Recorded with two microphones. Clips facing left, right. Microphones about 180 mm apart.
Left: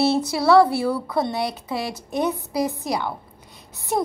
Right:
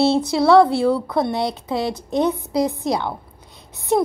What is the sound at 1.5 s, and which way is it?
Speech, 5° left (ahead or behind).